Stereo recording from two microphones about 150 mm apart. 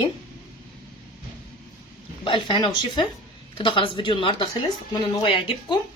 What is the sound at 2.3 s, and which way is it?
Speech, 35° left (ahead or behind).